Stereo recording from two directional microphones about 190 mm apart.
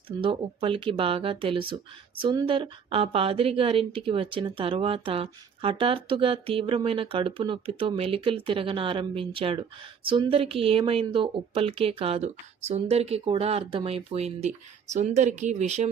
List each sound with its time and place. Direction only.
0.2 s a woman's voice: 30° right (ahead or behind)